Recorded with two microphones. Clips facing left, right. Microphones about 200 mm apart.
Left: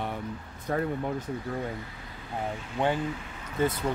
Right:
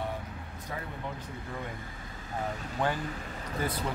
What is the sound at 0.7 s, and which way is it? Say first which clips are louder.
Speech: left 11 dB; 55° left (ahead or behind).